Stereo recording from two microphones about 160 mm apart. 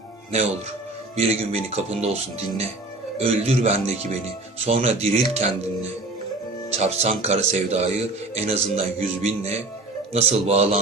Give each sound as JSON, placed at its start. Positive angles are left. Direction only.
{"t": 0.3, "sound": "a man's voice", "side_deg": -40}
{"t": 3.2, "sound": "a man's voice", "side_deg": -40}
{"t": 6.7, "sound": "a man's voice", "side_deg": -40}